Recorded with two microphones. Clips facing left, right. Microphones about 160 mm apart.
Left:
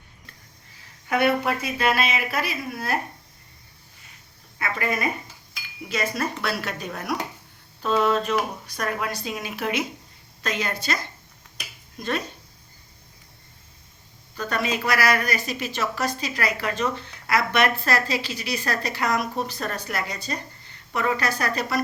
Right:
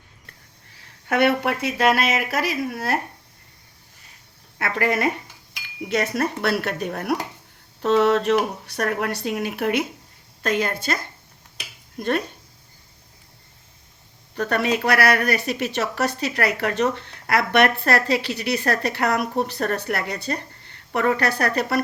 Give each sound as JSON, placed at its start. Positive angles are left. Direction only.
{"t": 1.0, "sound": "speech", "side_deg": -70}
{"t": 4.5, "sound": "speech", "side_deg": -70}
{"t": 5.9, "sound": "speech", "side_deg": -65}
{"t": 7.8, "sound": "a woman's voice", "side_deg": -75}
{"t": 14.3, "sound": "speech", "side_deg": -65}